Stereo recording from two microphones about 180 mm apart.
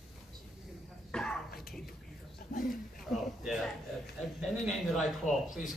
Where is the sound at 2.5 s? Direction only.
50° left (ahead or behind).